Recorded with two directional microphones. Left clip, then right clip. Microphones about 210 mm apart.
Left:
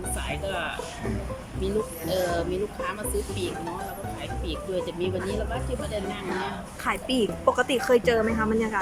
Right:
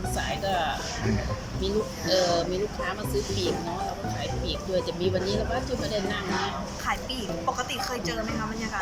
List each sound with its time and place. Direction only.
1.6 s speech: 10° left (ahead or behind)
6.8 s speech: 55° left (ahead or behind)